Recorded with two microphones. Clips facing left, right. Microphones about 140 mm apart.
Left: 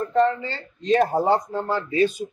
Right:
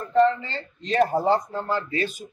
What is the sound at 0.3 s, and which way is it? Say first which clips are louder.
Speech: left 1 dB; 15° left (ahead or behind).